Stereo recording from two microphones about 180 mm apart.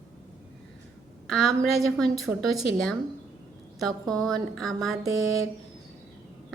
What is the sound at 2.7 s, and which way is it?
A woman's voice, centre (ahead or behind).